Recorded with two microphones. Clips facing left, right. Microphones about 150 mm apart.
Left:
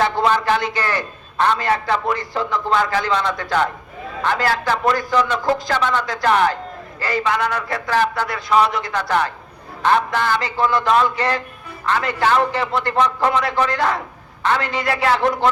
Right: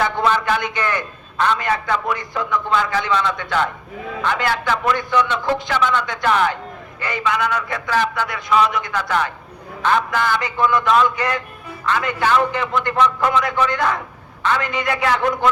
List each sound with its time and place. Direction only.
0.1 s a man's voice: 30° left (ahead or behind)